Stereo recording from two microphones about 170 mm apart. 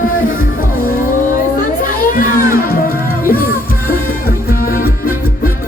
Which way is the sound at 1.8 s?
55° left (ahead or behind).